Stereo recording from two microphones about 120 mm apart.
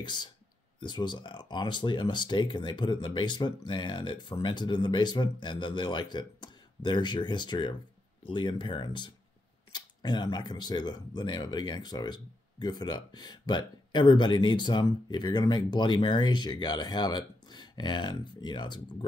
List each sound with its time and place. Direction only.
0.0 s speech: 40° left (ahead or behind)